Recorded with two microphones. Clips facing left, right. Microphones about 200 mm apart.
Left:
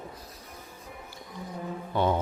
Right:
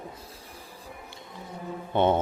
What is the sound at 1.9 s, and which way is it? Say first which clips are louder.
Mantra: right 4 dB; 25° right (ahead or behind).